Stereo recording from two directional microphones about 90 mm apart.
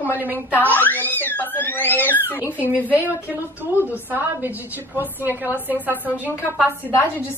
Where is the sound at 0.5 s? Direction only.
20° left (ahead or behind).